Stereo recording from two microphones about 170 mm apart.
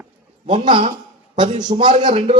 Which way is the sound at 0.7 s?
45° right (ahead or behind).